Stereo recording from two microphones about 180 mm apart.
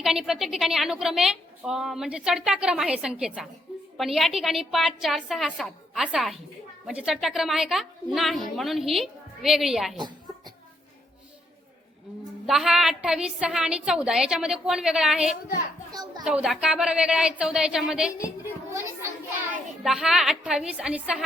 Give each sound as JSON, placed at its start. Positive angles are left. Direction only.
{"t": 0.0, "sound": "a woman's voice", "side_deg": 0}
{"t": 12.5, "sound": "a woman's voice", "side_deg": -5}
{"t": 15.9, "sound": "a child's voice", "side_deg": -20}
{"t": 16.2, "sound": "a woman's voice", "side_deg": -5}
{"t": 19.8, "sound": "a woman's voice", "side_deg": -5}